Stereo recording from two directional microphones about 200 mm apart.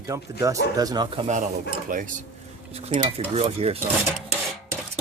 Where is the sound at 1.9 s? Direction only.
40° right (ahead or behind).